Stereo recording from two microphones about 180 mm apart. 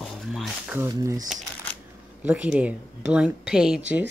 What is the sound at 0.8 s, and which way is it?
Speech, 15° right (ahead or behind).